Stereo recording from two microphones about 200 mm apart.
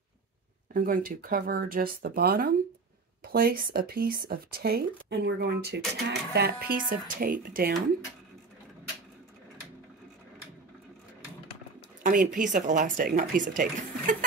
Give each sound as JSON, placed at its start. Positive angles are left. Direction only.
{"t": 0.7, "sound": "speech", "side_deg": -45}
{"t": 12.0, "sound": "speech", "side_deg": -40}